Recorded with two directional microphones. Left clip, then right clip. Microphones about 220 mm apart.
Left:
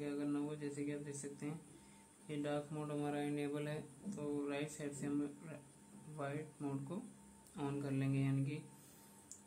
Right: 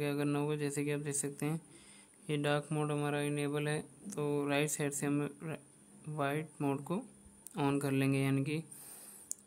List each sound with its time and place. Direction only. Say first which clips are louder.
0.0 s speech: right 7 dB; 45° right (ahead or behind)
4.2 s speech: right 9 dB; 45° right (ahead or behind)